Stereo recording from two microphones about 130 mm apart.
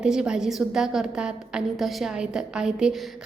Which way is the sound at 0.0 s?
5° right (ahead or behind).